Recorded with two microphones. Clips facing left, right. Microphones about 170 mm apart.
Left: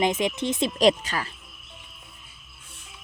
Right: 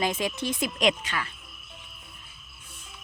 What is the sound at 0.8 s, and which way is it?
Speech, 35° left (ahead or behind).